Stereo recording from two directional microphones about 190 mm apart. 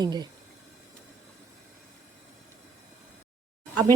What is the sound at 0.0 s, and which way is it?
Speech, 20° right (ahead or behind).